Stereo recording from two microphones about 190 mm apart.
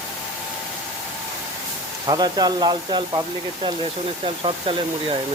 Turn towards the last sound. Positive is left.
turn(degrees=-25)  # may be behind; listen again after turning